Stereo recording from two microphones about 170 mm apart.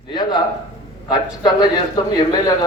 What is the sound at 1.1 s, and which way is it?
A man's voice, 25° left (ahead or behind).